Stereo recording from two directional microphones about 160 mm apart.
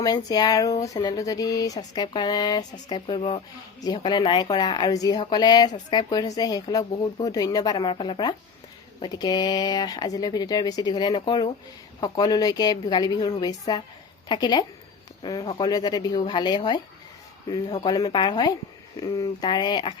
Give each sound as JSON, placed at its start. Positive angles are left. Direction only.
{"t": 0.0, "sound": "speech", "side_deg": 25}